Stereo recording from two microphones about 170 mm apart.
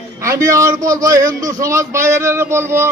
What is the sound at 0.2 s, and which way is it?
A man's voice, 15° right (ahead or behind).